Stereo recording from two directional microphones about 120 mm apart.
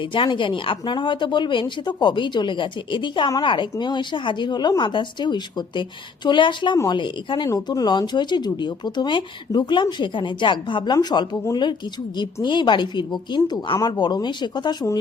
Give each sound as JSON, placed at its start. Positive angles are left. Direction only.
{"t": 0.0, "sound": "speech", "side_deg": 45}